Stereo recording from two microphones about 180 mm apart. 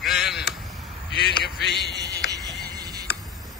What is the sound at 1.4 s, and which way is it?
Speech, 70° left (ahead or behind).